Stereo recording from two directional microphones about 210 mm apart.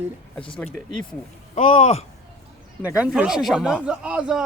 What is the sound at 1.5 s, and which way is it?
Speech, 35° left (ahead or behind).